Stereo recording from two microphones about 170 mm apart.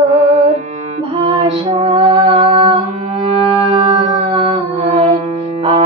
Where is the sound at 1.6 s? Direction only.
35° right (ahead or behind).